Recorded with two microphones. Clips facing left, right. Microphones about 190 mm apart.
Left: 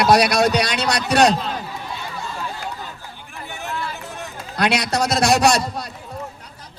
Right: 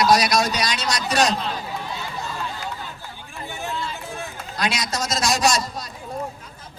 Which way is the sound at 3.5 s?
15° right (ahead or behind).